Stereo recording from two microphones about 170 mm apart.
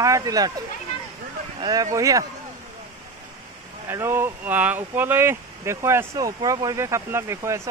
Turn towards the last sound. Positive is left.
turn(degrees=-15)  # may be behind; listen again after turning